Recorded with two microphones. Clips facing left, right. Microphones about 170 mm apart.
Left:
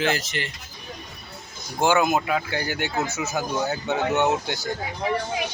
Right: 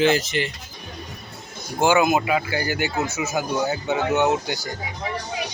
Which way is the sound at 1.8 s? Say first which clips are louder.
Right 2 dB; centre (ahead or behind).